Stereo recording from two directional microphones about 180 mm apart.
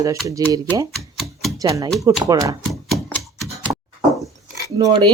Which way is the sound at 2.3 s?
20° right (ahead or behind).